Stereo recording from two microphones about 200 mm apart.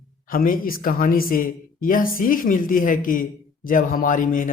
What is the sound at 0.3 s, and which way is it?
A woman's voice, 45° left (ahead or behind).